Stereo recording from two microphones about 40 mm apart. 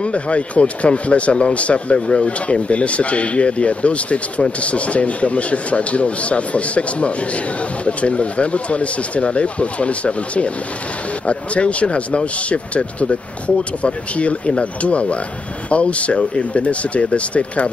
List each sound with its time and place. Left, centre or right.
0.0 s speech: left